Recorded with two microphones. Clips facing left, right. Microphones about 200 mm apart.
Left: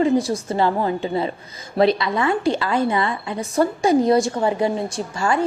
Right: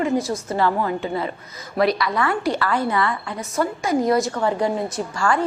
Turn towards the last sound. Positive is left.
turn(degrees=25)  # may be behind; listen again after turning